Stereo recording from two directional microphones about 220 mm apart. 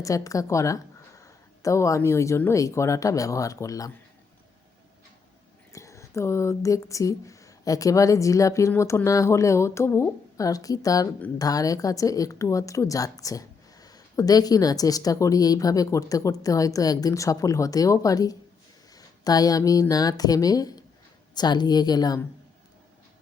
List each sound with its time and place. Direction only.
0.0 s speech: 15° left (ahead or behind)
5.7 s a woman's voice: 15° left (ahead or behind)